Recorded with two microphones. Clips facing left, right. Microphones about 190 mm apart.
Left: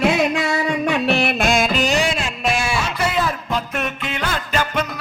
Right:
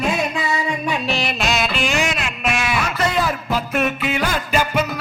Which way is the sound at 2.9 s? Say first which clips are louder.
Right 1 dB; 5° left (ahead or behind).